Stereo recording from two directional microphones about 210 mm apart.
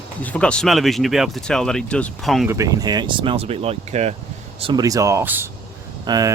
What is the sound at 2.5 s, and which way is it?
Speech, 15° right (ahead or behind).